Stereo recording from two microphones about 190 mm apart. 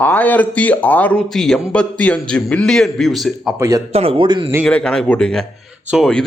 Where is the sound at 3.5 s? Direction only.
15° right (ahead or behind).